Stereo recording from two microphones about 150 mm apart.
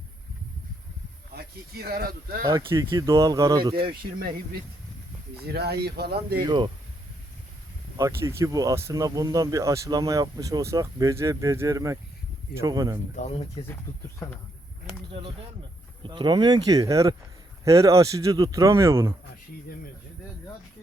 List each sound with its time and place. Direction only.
1.3 s speech: 90° right
2.4 s speech: 30° right (ahead or behind)
4.2 s speech: 75° right (ahead or behind)
5.5 s speech: 90° right
6.4 s speech: 30° right (ahead or behind)
7.9 s speech: 20° right (ahead or behind)
13.1 s speech: 45° left (ahead or behind)
13.9 s speech: 15° left (ahead or behind)
16.0 s speech: 30° right (ahead or behind)